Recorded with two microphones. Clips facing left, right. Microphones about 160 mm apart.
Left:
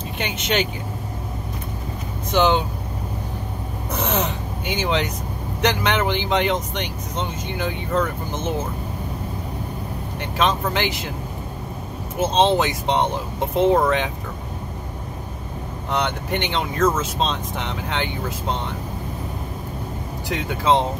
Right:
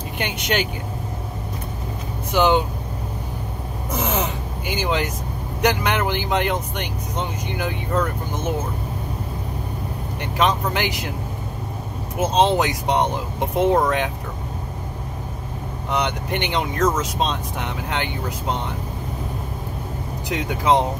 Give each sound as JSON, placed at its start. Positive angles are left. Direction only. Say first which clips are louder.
{"t": 0.2, "sound": "speech", "louder": "left 1 dB", "side_deg": -10}
{"t": 2.3, "sound": "speech", "louder": "right 1 dB", "side_deg": -10}
{"t": 3.9, "sound": "gasp", "louder": "even", "side_deg": -10}
{"t": 5.6, "sound": "speech", "louder": "even", "side_deg": -10}
{"t": 10.3, "sound": "speech", "louder": "even", "side_deg": -10}
{"t": 12.2, "sound": "speech", "louder": "even", "side_deg": -10}
{"t": 15.9, "sound": "speech", "louder": "even", "side_deg": -10}
{"t": 20.2, "sound": "speech", "louder": "even", "side_deg": -15}